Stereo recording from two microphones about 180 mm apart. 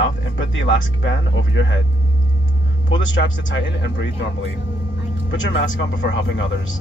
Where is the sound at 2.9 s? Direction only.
90° left.